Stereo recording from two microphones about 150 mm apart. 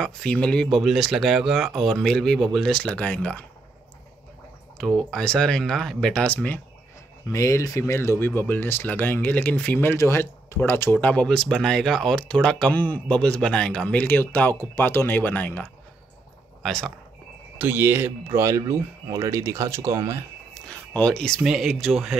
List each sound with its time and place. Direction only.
0.0 s speech: 5° left (ahead or behind)
4.7 s speech: 5° left (ahead or behind)
17.6 s speech: 15° right (ahead or behind)
20.5 s a sound: 5° left (ahead or behind)
21.4 s speech: centre (ahead or behind)